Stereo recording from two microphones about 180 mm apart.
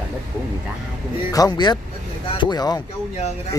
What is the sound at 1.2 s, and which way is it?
Speech, 20° left (ahead or behind).